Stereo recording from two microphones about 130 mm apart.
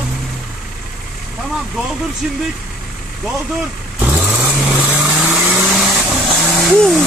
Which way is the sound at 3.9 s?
10° right (ahead or behind).